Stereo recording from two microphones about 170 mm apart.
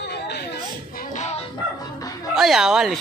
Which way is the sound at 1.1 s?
40° left (ahead or behind).